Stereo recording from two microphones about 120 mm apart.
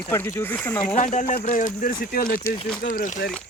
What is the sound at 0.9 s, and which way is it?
Speech, 90° left.